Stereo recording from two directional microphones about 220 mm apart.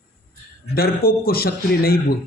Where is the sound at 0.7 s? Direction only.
45° left (ahead or behind).